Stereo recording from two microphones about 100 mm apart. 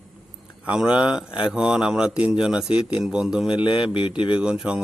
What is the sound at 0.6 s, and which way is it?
Speech, 10° right (ahead or behind).